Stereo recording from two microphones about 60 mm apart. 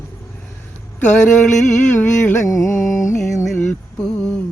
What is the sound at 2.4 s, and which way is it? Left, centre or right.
Music, left.